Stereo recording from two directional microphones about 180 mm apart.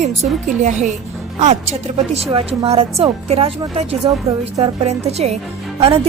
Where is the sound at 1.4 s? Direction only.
40° right (ahead or behind).